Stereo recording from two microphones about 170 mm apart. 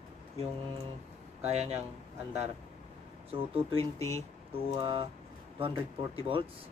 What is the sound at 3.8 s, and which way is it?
Speech, 15° left (ahead or behind).